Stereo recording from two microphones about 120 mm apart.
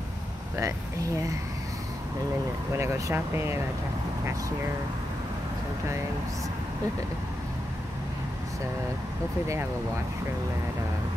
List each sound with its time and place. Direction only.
2.8 s speech: 20° right (ahead or behind)